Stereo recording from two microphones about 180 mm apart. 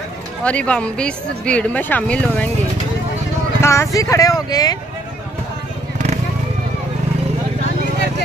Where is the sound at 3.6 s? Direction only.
15° left (ahead or behind).